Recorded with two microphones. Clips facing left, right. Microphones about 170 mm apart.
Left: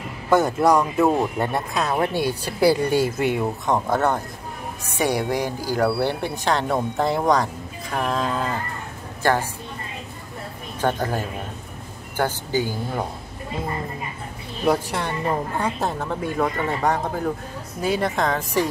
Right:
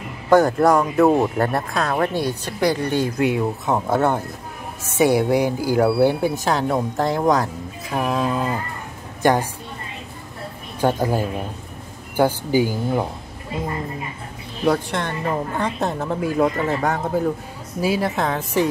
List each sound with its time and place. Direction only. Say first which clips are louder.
0.3 s a woman's voice: right 3 dB; centre (ahead or behind); by 9.5 s 15° right (ahead or behind)
10.8 s a woman's voice: right 4 dB; 10° right (ahead or behind)
14.7 s speech: right 1 dB; 10° left (ahead or behind)